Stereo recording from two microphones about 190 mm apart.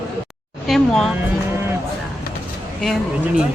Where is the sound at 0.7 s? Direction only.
Centre (ahead or behind).